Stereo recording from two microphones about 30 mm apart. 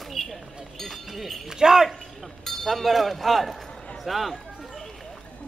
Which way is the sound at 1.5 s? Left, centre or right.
Centre.